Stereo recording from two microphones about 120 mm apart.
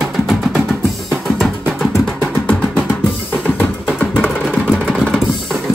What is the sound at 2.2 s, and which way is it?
Music, 10° left (ahead or behind).